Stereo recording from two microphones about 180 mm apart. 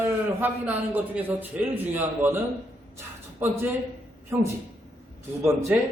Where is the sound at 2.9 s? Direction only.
15° right (ahead or behind).